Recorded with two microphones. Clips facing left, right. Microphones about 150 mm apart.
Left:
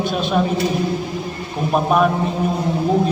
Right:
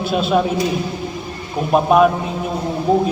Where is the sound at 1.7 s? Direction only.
5° right (ahead or behind).